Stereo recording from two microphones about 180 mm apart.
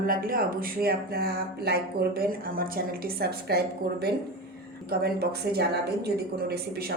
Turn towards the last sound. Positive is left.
turn(degrees=-60)  # may be behind; listen again after turning